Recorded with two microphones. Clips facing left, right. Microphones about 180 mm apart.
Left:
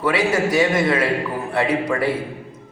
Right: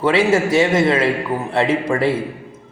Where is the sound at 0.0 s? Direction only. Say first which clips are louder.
Right 4 dB; 25° right (ahead or behind).